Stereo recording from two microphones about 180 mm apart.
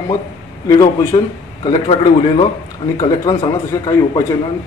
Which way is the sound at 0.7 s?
20° left (ahead or behind).